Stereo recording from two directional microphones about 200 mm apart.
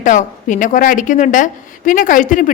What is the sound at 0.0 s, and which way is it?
A woman's voice, 40° left (ahead or behind).